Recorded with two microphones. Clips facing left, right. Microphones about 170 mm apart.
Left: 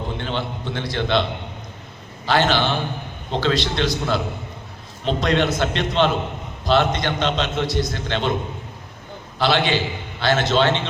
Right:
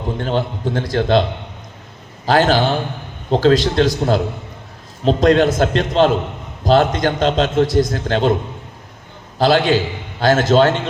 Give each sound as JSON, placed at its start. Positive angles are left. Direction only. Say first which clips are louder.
{"t": 0.2, "sound": "a man's voice", "louder": "right 6 dB", "side_deg": -40}
{"t": 2.2, "sound": "a man's voice", "louder": "right 5 dB", "side_deg": -40}
{"t": 9.4, "sound": "a man's voice", "louder": "right 6 dB", "side_deg": -45}